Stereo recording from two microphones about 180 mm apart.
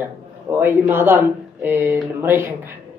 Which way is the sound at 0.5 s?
10° right (ahead or behind).